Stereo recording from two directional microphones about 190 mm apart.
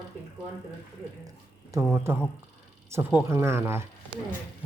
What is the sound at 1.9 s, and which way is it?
Speech, 10° right (ahead or behind).